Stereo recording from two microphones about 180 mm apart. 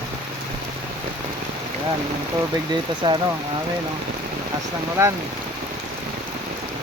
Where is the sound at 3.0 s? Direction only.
25° right (ahead or behind).